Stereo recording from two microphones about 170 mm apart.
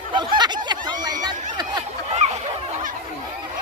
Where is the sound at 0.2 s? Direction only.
25° right (ahead or behind).